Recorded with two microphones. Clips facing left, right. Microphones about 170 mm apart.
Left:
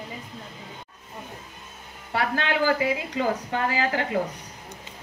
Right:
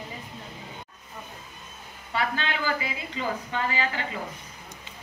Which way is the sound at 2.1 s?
70° left (ahead or behind).